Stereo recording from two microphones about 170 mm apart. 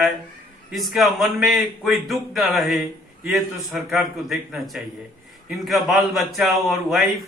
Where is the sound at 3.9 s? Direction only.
Centre (ahead or behind).